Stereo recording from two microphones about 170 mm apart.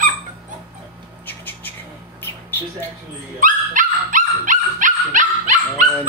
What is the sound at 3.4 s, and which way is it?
Dog, 50° right (ahead or behind).